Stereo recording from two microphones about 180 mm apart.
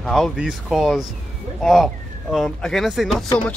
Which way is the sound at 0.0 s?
Centre (ahead or behind).